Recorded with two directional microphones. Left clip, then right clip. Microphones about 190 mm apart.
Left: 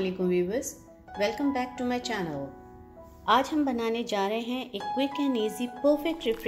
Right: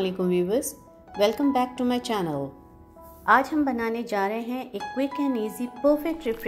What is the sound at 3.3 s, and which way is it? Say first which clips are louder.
Speech: right 4 dB; 5° right (ahead or behind).